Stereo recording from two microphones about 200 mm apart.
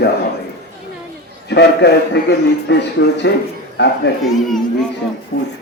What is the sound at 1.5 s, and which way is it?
A man's voice, 55° left (ahead or behind).